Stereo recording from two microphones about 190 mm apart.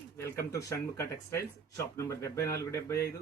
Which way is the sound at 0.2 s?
15° left (ahead or behind).